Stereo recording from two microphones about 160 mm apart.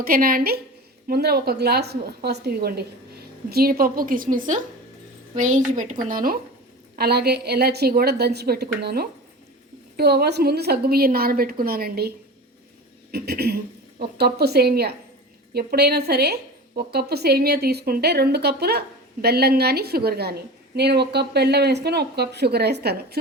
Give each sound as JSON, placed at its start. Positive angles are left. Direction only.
{"t": 0.0, "sound": "a woman's voice", "side_deg": -65}
{"t": 1.0, "sound": "a woman's voice", "side_deg": -80}
{"t": 3.5, "sound": "a woman's voice", "side_deg": -70}
{"t": 6.9, "sound": "a woman's voice", "side_deg": -85}
{"t": 10.0, "sound": "a woman's voice", "side_deg": -90}